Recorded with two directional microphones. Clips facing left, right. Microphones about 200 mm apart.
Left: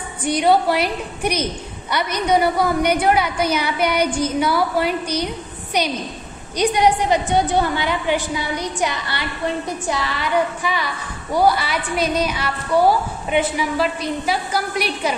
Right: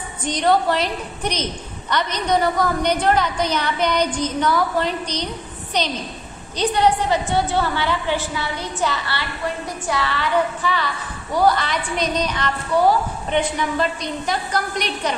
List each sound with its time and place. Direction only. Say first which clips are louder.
0.2 s a woman's voice: left 2 dB; 10° left (ahead or behind)